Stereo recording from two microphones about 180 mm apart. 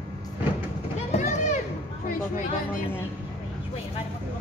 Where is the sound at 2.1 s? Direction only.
50° left (ahead or behind).